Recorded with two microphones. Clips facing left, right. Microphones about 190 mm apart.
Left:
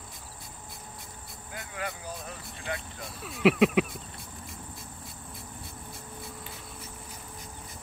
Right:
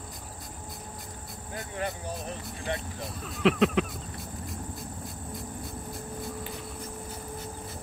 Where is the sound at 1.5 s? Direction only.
25° right (ahead or behind).